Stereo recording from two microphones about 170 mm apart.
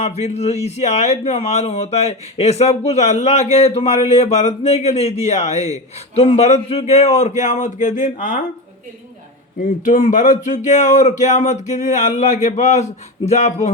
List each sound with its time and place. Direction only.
0.0 s speech: 40° left (ahead or behind)
9.8 s speech: 50° left (ahead or behind)